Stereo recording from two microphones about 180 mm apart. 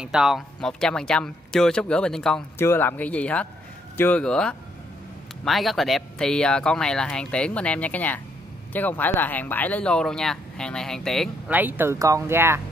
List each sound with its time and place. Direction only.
0.0 s speech: 5° right (ahead or behind)
11.5 s speech: 10° right (ahead or behind)